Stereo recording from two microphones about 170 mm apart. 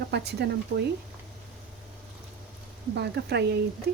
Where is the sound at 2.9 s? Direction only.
80° right.